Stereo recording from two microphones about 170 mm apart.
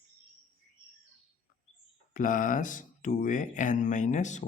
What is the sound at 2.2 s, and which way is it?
Speech, 50° left (ahead or behind).